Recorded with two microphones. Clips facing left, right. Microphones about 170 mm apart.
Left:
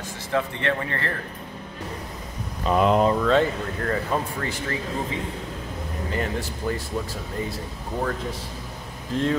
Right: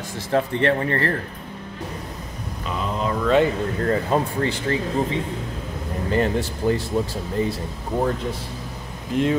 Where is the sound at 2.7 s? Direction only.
70° left (ahead or behind).